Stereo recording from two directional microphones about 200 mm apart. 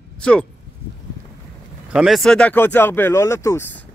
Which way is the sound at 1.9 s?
5° right (ahead or behind).